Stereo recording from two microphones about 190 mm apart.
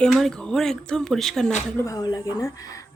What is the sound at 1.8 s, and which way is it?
A woman's voice, 20° left (ahead or behind).